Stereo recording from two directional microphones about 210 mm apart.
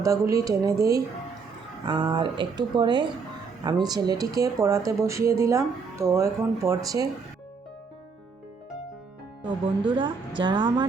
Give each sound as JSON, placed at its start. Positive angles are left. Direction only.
{"t": 0.0, "sound": "speech", "side_deg": -15}
{"t": 9.4, "sound": "speech", "side_deg": -20}